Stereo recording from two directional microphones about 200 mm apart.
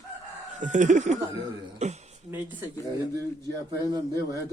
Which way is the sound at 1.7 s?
35° right (ahead or behind).